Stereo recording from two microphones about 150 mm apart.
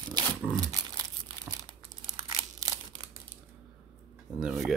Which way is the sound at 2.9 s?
35° right (ahead or behind).